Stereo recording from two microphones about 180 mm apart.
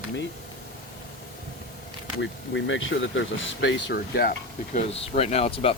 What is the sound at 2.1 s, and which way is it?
Speech, 90° left.